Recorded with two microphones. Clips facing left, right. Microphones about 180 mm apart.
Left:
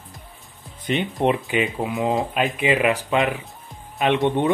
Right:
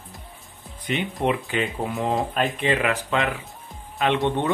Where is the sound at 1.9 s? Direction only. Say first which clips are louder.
Left 2 dB; centre (ahead or behind).